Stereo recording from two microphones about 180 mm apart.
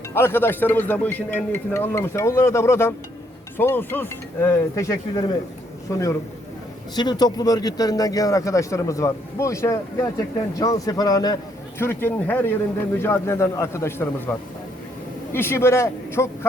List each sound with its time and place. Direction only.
0.1 s a man's voice: 15° left (ahead or behind)